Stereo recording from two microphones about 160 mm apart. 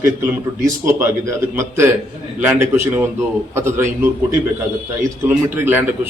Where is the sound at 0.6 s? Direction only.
15° right (ahead or behind).